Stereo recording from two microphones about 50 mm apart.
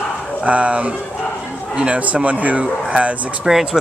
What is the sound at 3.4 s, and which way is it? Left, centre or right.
Speech, centre.